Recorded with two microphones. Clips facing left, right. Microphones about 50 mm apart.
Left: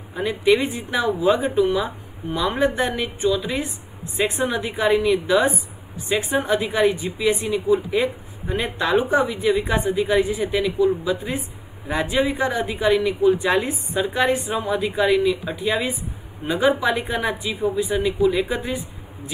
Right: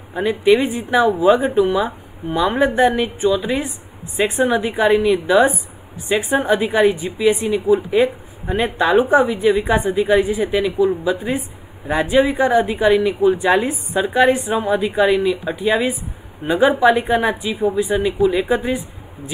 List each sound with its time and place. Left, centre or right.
0.1 s a woman's voice: centre